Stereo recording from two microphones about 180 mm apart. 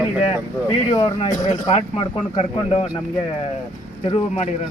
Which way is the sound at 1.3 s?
45° left (ahead or behind).